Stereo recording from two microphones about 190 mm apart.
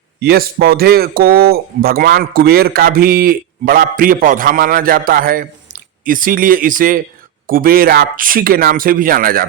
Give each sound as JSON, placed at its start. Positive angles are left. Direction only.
{"t": 0.2, "sound": "a man's voice", "side_deg": -55}